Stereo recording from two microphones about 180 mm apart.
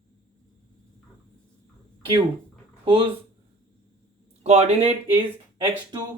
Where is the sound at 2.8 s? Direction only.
30° right (ahead or behind).